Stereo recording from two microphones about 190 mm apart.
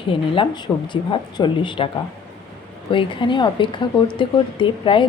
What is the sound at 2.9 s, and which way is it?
Speech, 25° left (ahead or behind).